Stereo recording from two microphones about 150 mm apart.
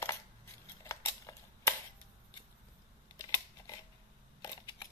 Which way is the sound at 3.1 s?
20° left (ahead or behind).